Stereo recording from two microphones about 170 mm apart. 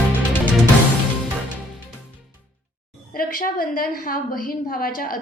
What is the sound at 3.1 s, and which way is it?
A woman's voice, 55° left (ahead or behind).